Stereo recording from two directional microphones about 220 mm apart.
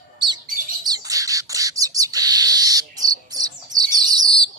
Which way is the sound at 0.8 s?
15° right (ahead or behind).